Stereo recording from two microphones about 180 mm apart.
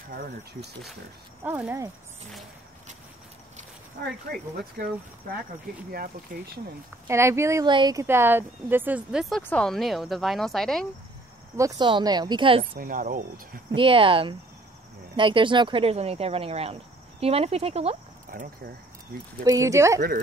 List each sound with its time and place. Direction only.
1.4 s speech: 10° right (ahead or behind)
4.0 s speech: 60° right (ahead or behind)
6.3 s speech: 50° right (ahead or behind)
7.1 s speech: 15° right (ahead or behind); by 10.9 s centre (ahead or behind)
11.5 s speech: 20° right (ahead or behind)
12.7 s speech: 50° right (ahead or behind)
13.7 s speech: 30° right (ahead or behind)
18.3 s speech: 55° right (ahead or behind)
19.4 s speech: 20° right (ahead or behind)